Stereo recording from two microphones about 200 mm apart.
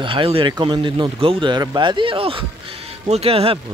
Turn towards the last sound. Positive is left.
turn(degrees=-30)  # may be behind; listen again after turning